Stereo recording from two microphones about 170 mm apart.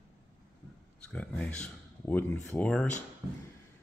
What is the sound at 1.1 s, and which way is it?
Speech, 5° left (ahead or behind).